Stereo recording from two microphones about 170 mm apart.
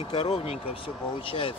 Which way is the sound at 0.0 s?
30° left (ahead or behind).